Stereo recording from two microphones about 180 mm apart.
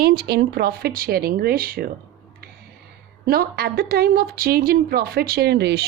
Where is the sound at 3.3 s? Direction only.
60° right (ahead or behind).